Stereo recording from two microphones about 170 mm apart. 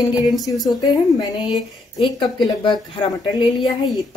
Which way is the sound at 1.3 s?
Centre (ahead or behind).